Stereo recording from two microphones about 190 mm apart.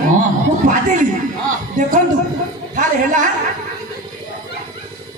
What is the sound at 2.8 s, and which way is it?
Speech, 45° right (ahead or behind).